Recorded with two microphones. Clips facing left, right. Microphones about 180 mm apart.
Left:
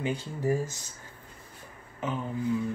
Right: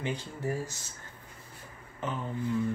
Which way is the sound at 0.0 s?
15° left (ahead or behind).